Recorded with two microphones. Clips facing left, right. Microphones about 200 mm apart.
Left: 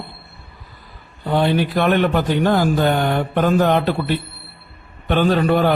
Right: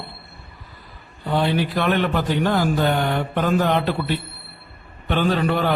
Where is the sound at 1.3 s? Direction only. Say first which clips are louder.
Left 3 dB; 50° left (ahead or behind).